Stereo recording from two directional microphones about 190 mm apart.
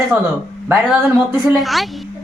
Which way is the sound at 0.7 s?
5° right (ahead or behind).